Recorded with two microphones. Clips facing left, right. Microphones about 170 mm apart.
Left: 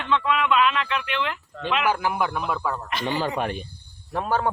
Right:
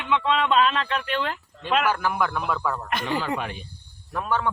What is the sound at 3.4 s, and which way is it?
Speech, 45° left (ahead or behind).